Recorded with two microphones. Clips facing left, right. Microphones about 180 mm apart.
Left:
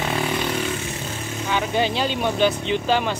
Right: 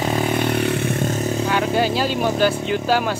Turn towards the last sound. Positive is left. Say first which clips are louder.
# right 2 dB
turn(degrees=-5)  # may be behind; listen again after turning